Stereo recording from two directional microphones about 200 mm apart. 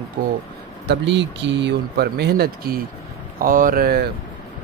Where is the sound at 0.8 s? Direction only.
60° right (ahead or behind).